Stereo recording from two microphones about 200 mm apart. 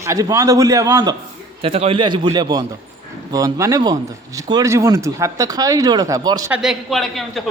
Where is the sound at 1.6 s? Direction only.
30° right (ahead or behind).